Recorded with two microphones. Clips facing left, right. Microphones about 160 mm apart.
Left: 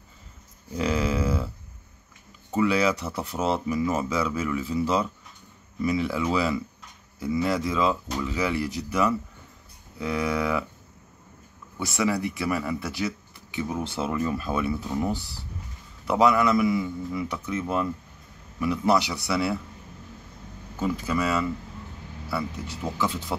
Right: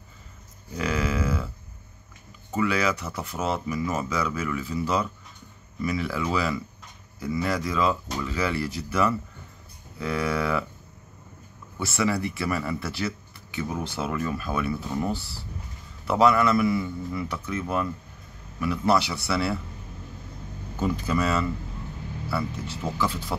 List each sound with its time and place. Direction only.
0.7 s a sound: 30° left (ahead or behind)
2.5 s speech: 30° left (ahead or behind)
11.8 s speech: 15° left (ahead or behind)
14.9 s speech: 15° left (ahead or behind)
20.8 s speech: 5° left (ahead or behind)